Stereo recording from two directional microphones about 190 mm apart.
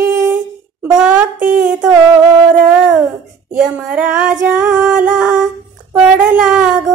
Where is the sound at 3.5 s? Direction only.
5° right (ahead or behind).